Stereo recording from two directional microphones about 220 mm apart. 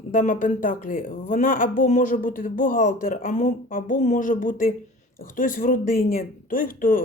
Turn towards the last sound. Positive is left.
turn(degrees=40)  # may be behind; listen again after turning